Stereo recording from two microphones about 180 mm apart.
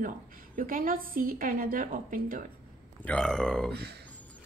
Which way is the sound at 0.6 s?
50° right (ahead or behind).